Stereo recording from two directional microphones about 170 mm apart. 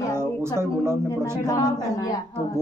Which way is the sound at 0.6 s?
15° right (ahead or behind).